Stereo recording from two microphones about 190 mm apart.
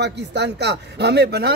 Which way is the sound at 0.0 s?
65° right (ahead or behind).